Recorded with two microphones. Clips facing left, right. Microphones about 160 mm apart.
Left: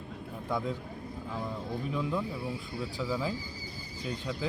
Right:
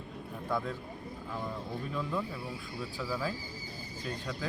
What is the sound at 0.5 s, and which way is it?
Speech, 15° left (ahead or behind).